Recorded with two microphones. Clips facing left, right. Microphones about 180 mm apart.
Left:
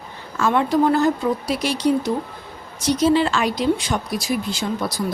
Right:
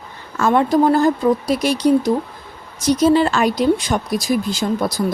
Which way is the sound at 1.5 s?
45° right (ahead or behind).